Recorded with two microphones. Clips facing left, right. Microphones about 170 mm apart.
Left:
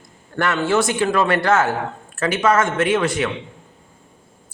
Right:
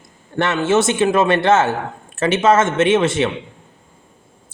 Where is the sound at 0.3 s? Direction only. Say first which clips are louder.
Right 2 dB; 25° right (ahead or behind).